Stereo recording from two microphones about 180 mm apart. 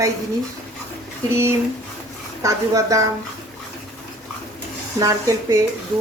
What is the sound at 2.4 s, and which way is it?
Speech, 20° right (ahead or behind).